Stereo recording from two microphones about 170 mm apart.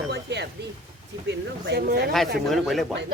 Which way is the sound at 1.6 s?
75° right (ahead or behind).